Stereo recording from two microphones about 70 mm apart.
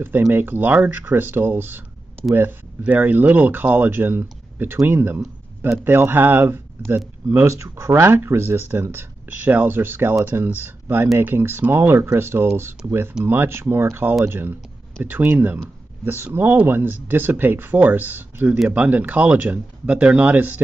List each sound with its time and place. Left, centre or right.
0.3 s speech: right
2.8 s speech: right
7.4 s speech: right